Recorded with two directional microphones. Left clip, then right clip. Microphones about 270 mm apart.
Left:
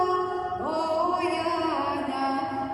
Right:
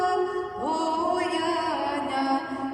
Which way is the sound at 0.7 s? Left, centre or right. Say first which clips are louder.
Right 1 dB; right.